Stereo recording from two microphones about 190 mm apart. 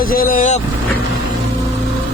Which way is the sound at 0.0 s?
50° left (ahead or behind).